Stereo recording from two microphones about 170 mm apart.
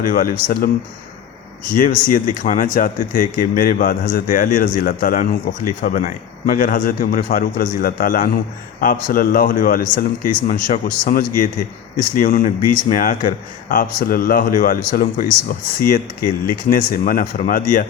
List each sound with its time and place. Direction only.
0.0 s speech: 55° left (ahead or behind)
1.7 s speech: 55° left (ahead or behind)